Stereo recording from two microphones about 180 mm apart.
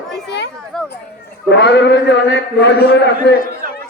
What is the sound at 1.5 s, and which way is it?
A man's voice, 75° left (ahead or behind).